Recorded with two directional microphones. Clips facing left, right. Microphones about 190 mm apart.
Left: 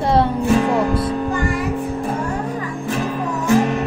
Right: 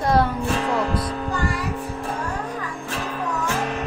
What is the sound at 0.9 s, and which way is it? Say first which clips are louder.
Music: left 6 dB; 25° left (ahead or behind).